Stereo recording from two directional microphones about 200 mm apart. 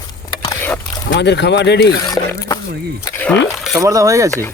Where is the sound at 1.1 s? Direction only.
60° left (ahead or behind).